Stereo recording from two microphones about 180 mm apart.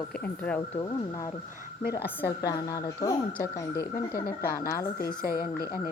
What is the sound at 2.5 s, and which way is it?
Speech, 20° left (ahead or behind).